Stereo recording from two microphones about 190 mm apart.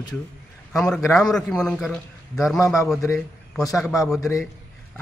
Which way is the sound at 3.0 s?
15° left (ahead or behind).